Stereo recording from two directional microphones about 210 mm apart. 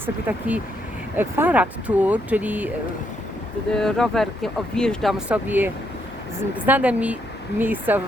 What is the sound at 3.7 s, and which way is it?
Speech, centre (ahead or behind).